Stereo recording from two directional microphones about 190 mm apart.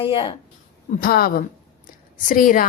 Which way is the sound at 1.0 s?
55° left (ahead or behind).